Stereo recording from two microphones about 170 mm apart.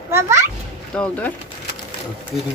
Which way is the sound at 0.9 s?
5° left (ahead or behind).